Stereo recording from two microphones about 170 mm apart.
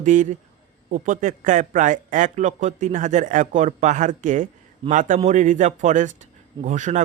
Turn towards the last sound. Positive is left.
turn(degrees=-45)  # may be behind; listen again after turning